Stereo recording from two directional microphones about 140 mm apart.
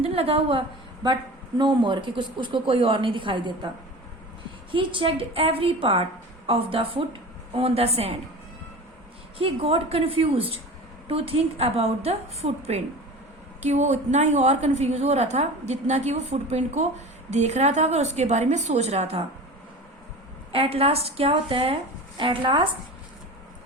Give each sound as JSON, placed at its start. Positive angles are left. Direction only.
{"t": 0.0, "sound": "a woman's voice", "side_deg": -45}
{"t": 1.0, "sound": "a sound", "side_deg": -30}
{"t": 1.5, "sound": "a woman's voice", "side_deg": -35}
{"t": 4.7, "sound": "a woman's voice", "side_deg": -35}
{"t": 9.4, "sound": "a woman's voice", "side_deg": -40}
{"t": 20.5, "sound": "a woman's voice", "side_deg": -45}